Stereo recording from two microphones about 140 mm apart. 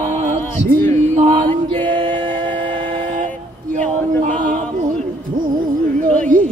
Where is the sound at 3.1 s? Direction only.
65° right (ahead or behind).